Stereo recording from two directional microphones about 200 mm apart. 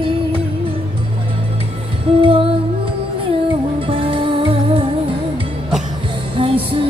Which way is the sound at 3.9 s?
25° right (ahead or behind).